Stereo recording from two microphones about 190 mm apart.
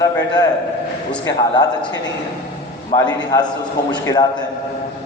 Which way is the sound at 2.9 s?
20° left (ahead or behind).